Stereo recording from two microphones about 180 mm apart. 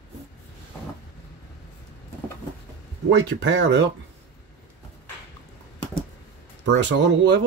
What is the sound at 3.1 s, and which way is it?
Speech, 90° right.